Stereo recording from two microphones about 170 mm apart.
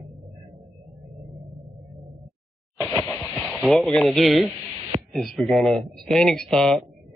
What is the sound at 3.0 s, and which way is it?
Speech, centre (ahead or behind).